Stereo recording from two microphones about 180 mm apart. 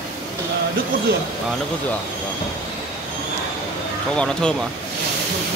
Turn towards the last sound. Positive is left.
turn(degrees=5)  # may be behind; listen again after turning